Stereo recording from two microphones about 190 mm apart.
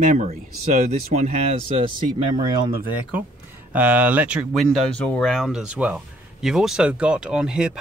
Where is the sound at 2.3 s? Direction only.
20° right (ahead or behind).